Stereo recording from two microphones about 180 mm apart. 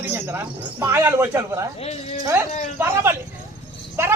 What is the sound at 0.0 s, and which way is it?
A woman's voice, 10° right (ahead or behind).